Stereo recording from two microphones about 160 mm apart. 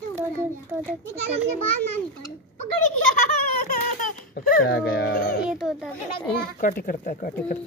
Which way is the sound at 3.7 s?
55° left (ahead or behind).